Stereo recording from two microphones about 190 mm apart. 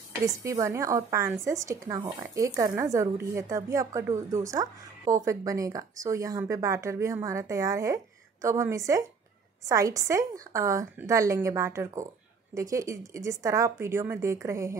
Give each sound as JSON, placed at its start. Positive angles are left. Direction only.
{"t": 0.2, "sound": "a woman's voice", "side_deg": -15}